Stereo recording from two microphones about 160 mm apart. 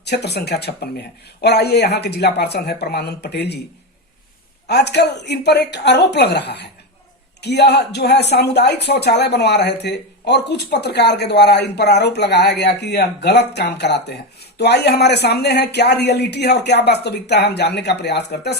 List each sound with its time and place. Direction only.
0.0 s speech: 90° left
4.7 s speech: 90° left